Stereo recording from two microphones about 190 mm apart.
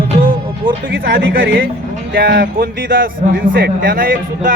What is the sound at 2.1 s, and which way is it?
A man's voice, 55° right (ahead or behind).